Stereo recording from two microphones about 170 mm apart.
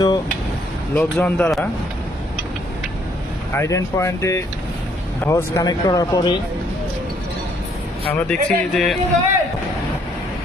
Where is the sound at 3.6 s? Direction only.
15° left (ahead or behind).